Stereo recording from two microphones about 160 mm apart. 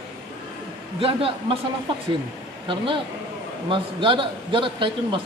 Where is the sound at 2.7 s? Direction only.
30° right (ahead or behind).